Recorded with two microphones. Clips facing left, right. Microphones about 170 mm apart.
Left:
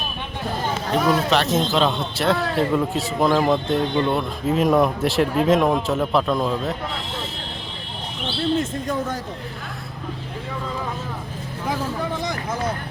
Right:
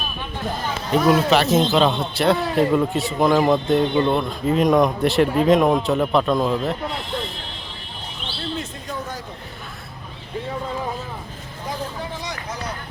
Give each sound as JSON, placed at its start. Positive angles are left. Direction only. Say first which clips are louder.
{"t": 1.0, "sound": "a man's voice", "louder": "right 4 dB", "side_deg": -5}
{"t": 12.2, "sound": "vehicle", "louder": "left 5 dB", "side_deg": 50}